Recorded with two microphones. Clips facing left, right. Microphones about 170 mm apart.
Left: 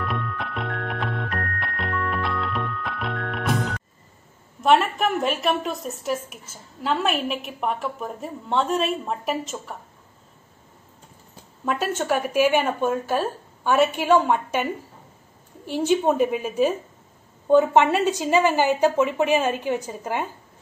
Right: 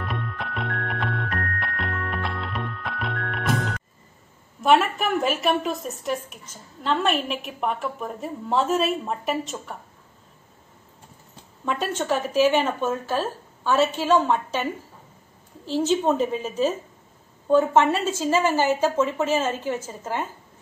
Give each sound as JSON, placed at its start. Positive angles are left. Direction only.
{"t": 0.0, "sound": "music", "side_deg": 0}
{"t": 4.6, "sound": "a woman's voice", "side_deg": 0}
{"t": 11.6, "sound": "a woman's voice", "side_deg": 5}